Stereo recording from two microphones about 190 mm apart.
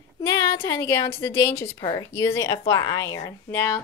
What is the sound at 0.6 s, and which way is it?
Speech, 15° left (ahead or behind).